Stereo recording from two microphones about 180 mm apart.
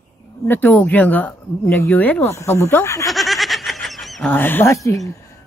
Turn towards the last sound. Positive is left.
turn(degrees=15)  # may be behind; listen again after turning